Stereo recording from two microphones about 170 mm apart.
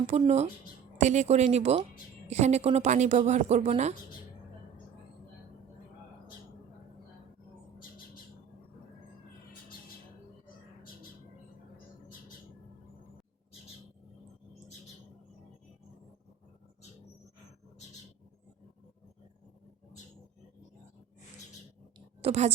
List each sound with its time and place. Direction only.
0.1 s a woman's voice: 40° right (ahead or behind)
7.8 s bird: 60° left (ahead or behind)
21.9 s a sound: 40° right (ahead or behind)